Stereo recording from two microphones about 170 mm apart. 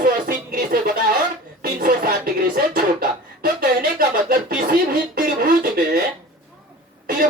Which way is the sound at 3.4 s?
60° right (ahead or behind).